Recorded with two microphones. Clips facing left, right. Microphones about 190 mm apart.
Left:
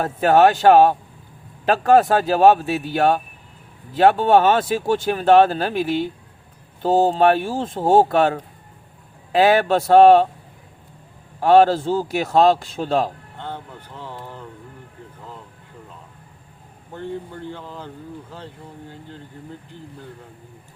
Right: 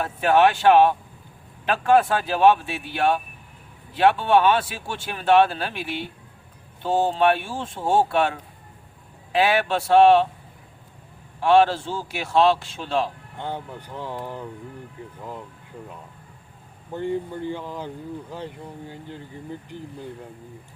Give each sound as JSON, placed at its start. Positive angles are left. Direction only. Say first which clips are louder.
{"t": 0.0, "sound": "a man's voice", "louder": "left 4 dB", "side_deg": 40}
{"t": 11.3, "sound": "a man's voice", "louder": "left 4 dB", "side_deg": 40}
{"t": 13.4, "sound": "speech", "louder": "right 2 dB", "side_deg": -15}
{"t": 16.9, "sound": "speech", "louder": "right 4 dB", "side_deg": -15}